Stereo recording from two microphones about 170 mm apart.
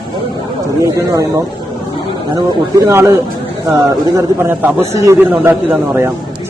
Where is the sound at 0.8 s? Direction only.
20° right (ahead or behind).